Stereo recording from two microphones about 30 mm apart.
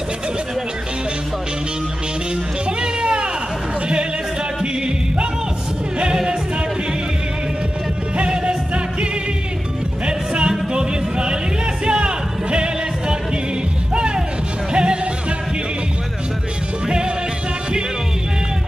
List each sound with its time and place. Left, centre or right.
2.8 s a sound: right
8.2 s music: right
10.0 s music: right
13.9 s music: right